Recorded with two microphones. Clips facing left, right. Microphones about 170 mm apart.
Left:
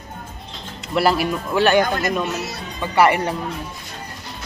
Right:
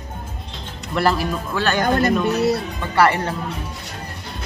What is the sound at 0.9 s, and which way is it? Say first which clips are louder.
Speech: left 1 dB; 10° left (ahead or behind).